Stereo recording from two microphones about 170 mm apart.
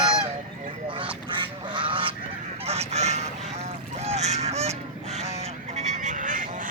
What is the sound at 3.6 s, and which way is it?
Honk, 40° right (ahead or behind).